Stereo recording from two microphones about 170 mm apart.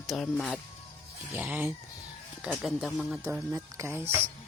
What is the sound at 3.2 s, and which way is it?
Speech, 15° right (ahead or behind).